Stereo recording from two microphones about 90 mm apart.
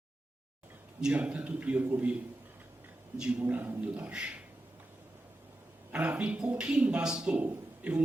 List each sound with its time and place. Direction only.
1.0 s a man's voice: 15° right (ahead or behind)
3.4 s a man's voice: 20° right (ahead or behind)
5.9 s a man's voice: 15° right (ahead or behind)